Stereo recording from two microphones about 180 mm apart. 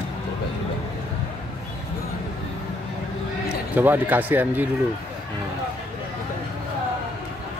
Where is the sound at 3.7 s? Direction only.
10° right (ahead or behind).